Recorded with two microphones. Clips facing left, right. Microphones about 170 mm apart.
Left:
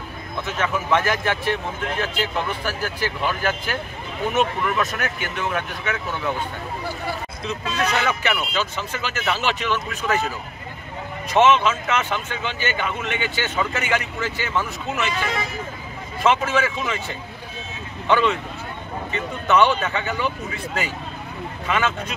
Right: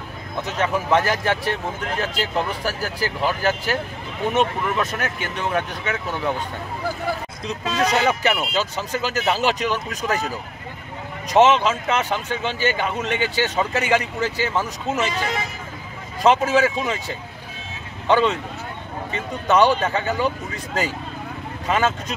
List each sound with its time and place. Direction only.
0.4 s speech: 35° right (ahead or behind)
7.4 s speech: 35° right (ahead or behind)
11.2 s speech: 35° right (ahead or behind)
16.4 s speech: 40° right (ahead or behind)
18.0 s speech: 30° right (ahead or behind)